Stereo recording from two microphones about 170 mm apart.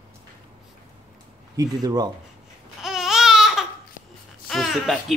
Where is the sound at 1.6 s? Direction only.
20° right (ahead or behind).